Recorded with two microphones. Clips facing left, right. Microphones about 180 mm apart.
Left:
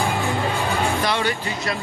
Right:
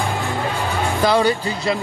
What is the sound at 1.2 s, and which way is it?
Speech, 35° right (ahead or behind).